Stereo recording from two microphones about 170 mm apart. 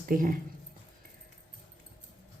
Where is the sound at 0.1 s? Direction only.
55° right (ahead or behind).